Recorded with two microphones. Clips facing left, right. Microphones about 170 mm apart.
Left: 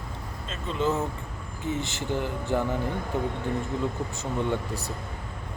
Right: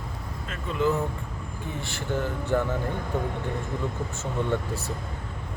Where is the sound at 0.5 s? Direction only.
25° left (ahead or behind).